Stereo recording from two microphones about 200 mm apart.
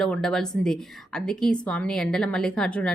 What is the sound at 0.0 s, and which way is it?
A woman's voice, 5° left (ahead or behind).